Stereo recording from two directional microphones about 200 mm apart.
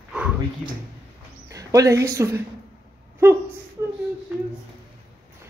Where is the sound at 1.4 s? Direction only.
15° right (ahead or behind).